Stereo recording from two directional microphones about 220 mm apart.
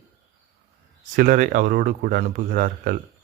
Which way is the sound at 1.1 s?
35° right (ahead or behind).